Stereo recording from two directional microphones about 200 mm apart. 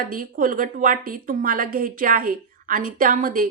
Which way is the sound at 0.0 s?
45° right (ahead or behind).